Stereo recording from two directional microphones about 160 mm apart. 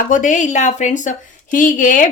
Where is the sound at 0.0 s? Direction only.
55° left (ahead or behind).